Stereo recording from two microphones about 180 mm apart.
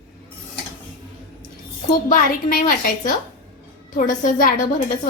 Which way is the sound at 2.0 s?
50° left (ahead or behind).